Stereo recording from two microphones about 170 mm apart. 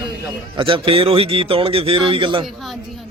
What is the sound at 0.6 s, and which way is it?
Speech, 30° right (ahead or behind).